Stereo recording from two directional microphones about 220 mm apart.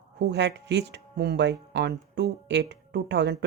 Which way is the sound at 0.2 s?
50° right (ahead or behind).